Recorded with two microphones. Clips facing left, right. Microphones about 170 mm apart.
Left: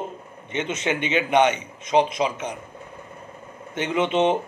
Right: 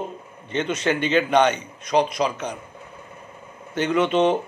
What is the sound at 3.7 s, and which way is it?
Speech, 25° left (ahead or behind).